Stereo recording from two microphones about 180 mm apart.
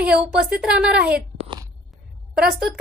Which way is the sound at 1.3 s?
35° right (ahead or behind).